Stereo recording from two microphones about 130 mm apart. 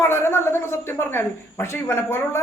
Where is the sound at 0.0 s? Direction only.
20° left (ahead or behind).